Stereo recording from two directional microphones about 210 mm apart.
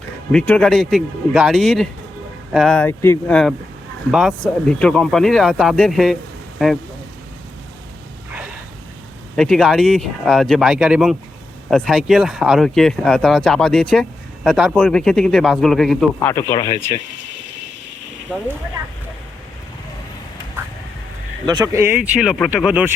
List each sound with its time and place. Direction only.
0.3 s speech: 5° left (ahead or behind)
9.3 s speech: 5° left (ahead or behind)
16.5 s speech: 25° left (ahead or behind)
21.4 s speech: 20° right (ahead or behind)
22.2 s speech: centre (ahead or behind)